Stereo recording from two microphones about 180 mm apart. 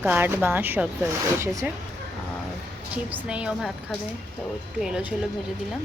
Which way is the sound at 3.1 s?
5° right (ahead or behind).